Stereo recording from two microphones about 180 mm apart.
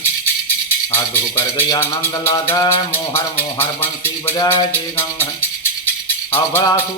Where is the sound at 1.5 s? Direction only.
15° left (ahead or behind).